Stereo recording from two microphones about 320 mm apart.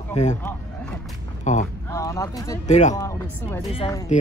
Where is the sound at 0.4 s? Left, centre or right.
Centre.